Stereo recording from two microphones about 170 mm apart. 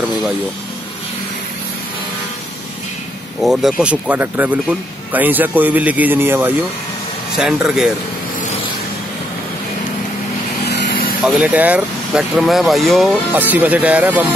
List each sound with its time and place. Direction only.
3.4 s speech: centre (ahead or behind)
10.6 s vehicle: 75° left (ahead or behind)
11.2 s speech: 5° right (ahead or behind)
13.3 s speech: 10° right (ahead or behind)